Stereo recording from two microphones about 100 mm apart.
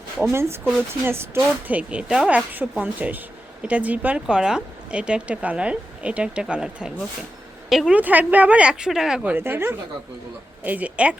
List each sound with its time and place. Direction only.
0.2 s a woman's voice: 25° right (ahead or behind); by 7.9 s centre (ahead or behind)
7.9 s speech: 15° right (ahead or behind)
9.3 s a woman's voice: 20° right (ahead or behind)